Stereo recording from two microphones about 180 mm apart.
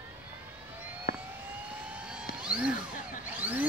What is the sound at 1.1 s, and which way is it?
Vehicle, 55° left (ahead or behind).